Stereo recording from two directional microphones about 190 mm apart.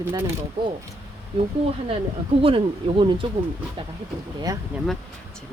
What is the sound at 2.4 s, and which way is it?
Speech, 30° right (ahead or behind).